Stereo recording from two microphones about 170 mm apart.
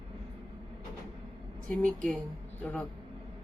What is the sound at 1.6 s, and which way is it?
A woman's voice, 5° left (ahead or behind).